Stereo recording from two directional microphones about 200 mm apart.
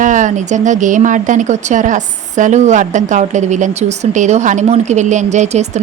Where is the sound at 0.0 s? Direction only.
40° right (ahead or behind).